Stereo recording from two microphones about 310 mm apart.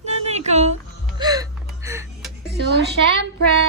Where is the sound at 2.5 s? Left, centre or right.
Right.